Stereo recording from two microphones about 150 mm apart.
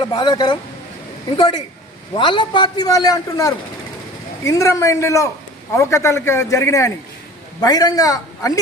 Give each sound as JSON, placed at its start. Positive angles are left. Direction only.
{"t": 0.0, "sound": "a man's voice", "side_deg": 35}